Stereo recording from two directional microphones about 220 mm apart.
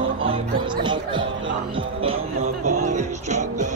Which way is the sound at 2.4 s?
90° right.